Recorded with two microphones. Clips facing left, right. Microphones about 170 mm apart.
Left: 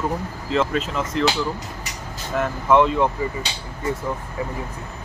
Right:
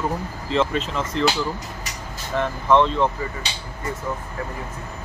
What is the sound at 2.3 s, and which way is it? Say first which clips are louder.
Speech: left 1 dB; 5° left (ahead or behind).